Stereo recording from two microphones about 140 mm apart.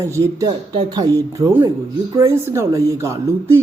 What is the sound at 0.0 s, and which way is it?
A man's voice, 25° right (ahead or behind).